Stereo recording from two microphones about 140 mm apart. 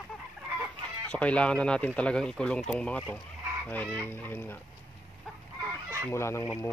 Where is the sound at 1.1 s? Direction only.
10° left (ahead or behind).